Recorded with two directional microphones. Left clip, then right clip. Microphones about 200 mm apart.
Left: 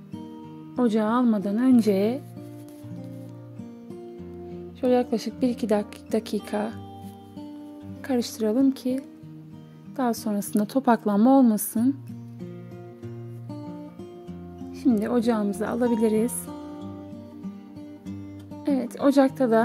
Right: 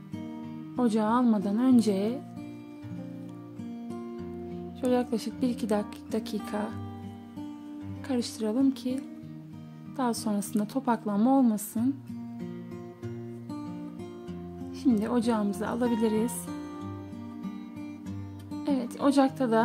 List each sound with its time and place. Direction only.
0.7 s a woman's voice: 20° left (ahead or behind)
4.8 s a woman's voice: 15° left (ahead or behind)
8.1 s a woman's voice: 25° left (ahead or behind)
10.5 s a woman's voice: 30° left (ahead or behind)
14.8 s a woman's voice: 15° left (ahead or behind)
18.6 s music: 20° left (ahead or behind)